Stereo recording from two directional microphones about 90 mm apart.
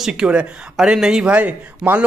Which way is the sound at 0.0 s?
10° right (ahead or behind).